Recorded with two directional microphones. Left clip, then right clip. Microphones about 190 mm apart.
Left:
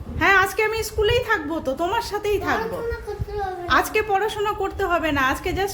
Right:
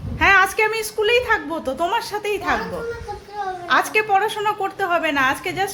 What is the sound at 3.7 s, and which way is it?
A woman's voice, centre (ahead or behind).